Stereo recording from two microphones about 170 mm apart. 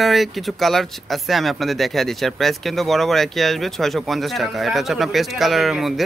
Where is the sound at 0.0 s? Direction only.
Centre (ahead or behind).